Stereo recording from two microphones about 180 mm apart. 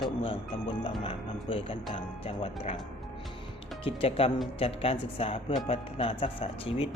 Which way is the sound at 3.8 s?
30° left (ahead or behind).